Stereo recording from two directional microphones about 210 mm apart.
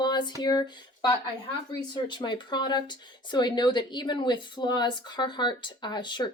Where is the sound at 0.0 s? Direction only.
20° left (ahead or behind).